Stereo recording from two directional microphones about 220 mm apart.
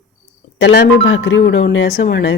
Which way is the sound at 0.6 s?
55° left (ahead or behind).